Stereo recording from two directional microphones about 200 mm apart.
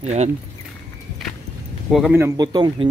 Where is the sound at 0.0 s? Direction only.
35° right (ahead or behind).